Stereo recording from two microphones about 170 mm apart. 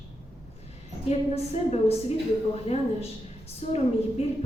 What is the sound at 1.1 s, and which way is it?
Speech, 40° left (ahead or behind).